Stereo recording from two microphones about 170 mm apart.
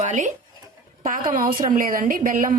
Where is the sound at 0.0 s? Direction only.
45° right (ahead or behind).